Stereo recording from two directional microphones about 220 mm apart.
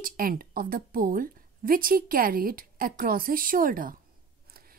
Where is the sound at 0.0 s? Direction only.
40° right (ahead or behind).